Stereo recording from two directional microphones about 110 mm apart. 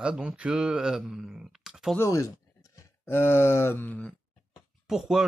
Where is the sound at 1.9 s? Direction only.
30° left (ahead or behind).